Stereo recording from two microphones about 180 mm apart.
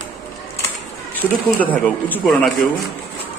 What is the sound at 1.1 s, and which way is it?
Speech, 10° left (ahead or behind).